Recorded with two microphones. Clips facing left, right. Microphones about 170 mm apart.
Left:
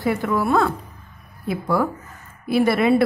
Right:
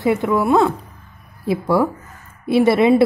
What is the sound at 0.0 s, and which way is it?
A woman's voice, 25° right (ahead or behind).